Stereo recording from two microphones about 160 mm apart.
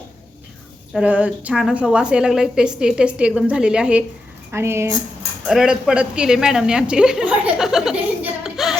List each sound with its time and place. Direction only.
0.9 s a woman's voice: 10° right (ahead or behind)
4.5 s speech: 15° right (ahead or behind)
5.5 s a woman's voice: centre (ahead or behind)